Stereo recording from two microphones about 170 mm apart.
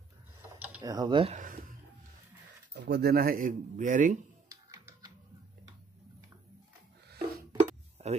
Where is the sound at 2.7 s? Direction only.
70° right (ahead or behind); by 4.1 s 50° right (ahead or behind).